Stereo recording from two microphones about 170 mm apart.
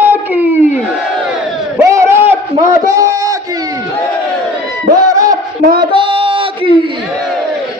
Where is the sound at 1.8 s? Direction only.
15° right (ahead or behind).